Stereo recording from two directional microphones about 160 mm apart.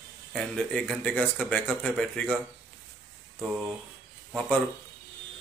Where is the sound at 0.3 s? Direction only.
5° left (ahead or behind).